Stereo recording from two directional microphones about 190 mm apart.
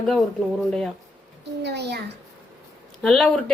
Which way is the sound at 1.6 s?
60° right (ahead or behind).